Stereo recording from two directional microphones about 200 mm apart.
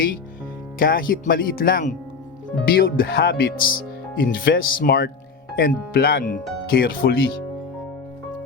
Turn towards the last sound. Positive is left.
turn(degrees=50)  # may be behind; listen again after turning